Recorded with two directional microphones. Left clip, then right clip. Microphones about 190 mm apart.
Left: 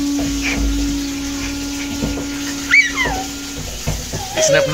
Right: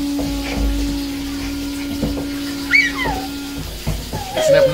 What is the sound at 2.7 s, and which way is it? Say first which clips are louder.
Dog: left 2 dB; 15° right (ahead or behind).